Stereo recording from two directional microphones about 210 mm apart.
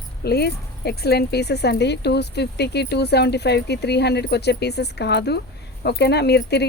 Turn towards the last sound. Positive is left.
turn(degrees=50)  # may be behind; listen again after turning